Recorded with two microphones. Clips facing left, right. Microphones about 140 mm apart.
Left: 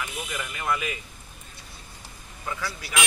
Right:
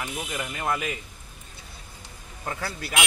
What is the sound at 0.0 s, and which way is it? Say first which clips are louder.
Speech: right 1 dB; 30° right (ahead or behind).